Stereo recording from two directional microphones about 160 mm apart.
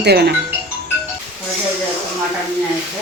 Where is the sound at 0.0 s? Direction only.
90° right.